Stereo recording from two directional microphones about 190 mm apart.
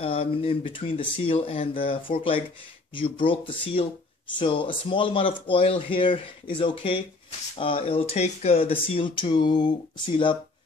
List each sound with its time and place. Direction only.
0.0 s speech: 30° left (ahead or behind)